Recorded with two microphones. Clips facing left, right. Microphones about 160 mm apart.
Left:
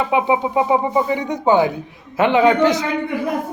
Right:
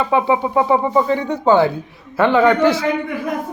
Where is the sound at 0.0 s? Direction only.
15° left (ahead or behind).